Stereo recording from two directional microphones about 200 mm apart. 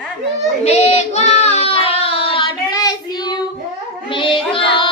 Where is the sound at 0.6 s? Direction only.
30° left (ahead or behind).